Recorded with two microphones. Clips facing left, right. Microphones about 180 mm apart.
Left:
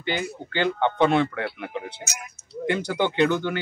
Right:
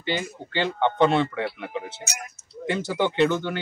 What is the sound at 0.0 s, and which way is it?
Speech, centre (ahead or behind).